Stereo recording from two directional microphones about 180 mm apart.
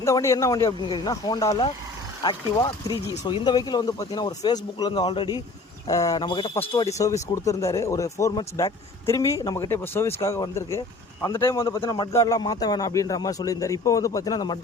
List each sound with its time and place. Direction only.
0.0 s speech: 15° left (ahead or behind)